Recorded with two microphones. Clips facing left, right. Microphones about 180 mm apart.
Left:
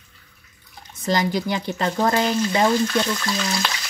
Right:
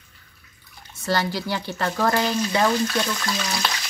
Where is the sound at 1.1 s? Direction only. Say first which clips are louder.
Left 3 dB; 15° left (ahead or behind).